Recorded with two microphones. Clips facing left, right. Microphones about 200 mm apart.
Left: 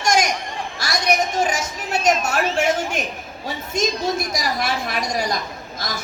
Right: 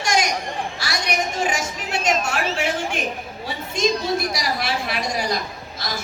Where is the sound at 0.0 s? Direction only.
45° left (ahead or behind).